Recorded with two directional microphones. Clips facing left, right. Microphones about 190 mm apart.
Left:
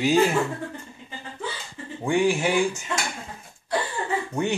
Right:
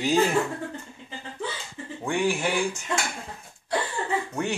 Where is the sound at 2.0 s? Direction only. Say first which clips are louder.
Left 4 dB; 10° left (ahead or behind).